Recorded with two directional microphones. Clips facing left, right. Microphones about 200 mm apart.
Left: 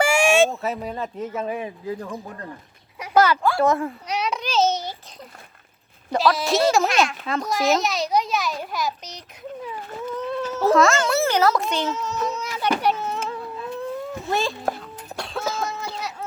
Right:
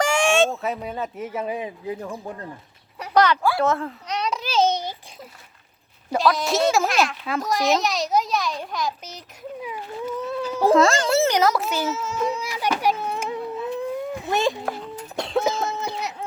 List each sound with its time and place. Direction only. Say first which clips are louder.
0.0 s speech: left 2 dB; 10° left (ahead or behind); by 2.1 s 15° right (ahead or behind)
3.0 s speech: left 1 dB; 5° left (ahead or behind)
3.6 s dog: left 2 dB; 10° left (ahead or behind); by 4.9 s 15° right (ahead or behind)
6.1 s speech: left 1 dB; centre (ahead or behind)
9.6 s baby cry: right 2 dB; 10° right (ahead or behind)
10.8 s a child's voice: even; 30° right (ahead or behind)
11.3 s a child's voice: even; 15° right (ahead or behind)
11.6 s a sound: even; 5° right (ahead or behind)